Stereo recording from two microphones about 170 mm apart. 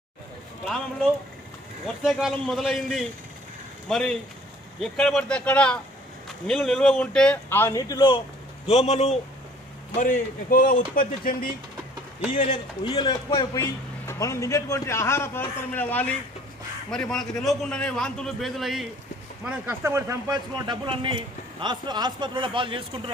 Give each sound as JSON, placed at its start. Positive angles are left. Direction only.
{"t": 2.0, "sound": "a man's voice", "side_deg": 0}
{"t": 8.7, "sound": "a man's voice", "side_deg": 40}
{"t": 10.0, "sound": "a man's voice", "side_deg": 50}
{"t": 12.5, "sound": "a man's voice", "side_deg": 30}
{"t": 19.5, "sound": "speech", "side_deg": -15}